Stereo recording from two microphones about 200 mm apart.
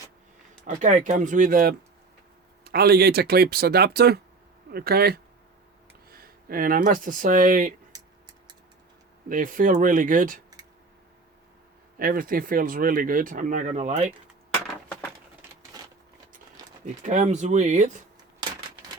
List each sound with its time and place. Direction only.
0.6 s speech: 40° right (ahead or behind)
9.3 s speech: 40° right (ahead or behind)
11.9 s speech: 45° right (ahead or behind)
15.8 s a sound: 20° right (ahead or behind)
16.8 s speech: 35° right (ahead or behind)